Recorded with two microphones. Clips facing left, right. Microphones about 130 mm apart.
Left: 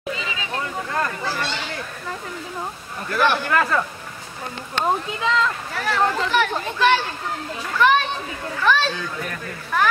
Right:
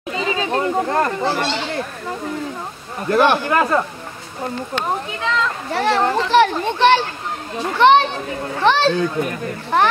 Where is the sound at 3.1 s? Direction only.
30° right (ahead or behind).